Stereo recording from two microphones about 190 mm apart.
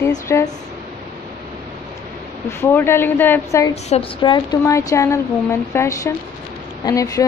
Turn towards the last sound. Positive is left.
turn(degrees=15)  # may be behind; listen again after turning